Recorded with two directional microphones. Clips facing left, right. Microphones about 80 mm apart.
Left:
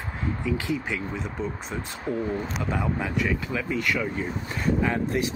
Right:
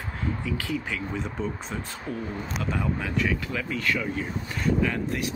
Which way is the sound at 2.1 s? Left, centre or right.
Centre.